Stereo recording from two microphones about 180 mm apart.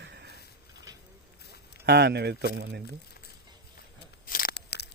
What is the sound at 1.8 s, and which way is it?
Speech, 65° right (ahead or behind).